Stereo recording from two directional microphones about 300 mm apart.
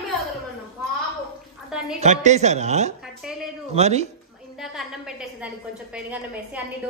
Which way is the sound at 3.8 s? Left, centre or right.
Right.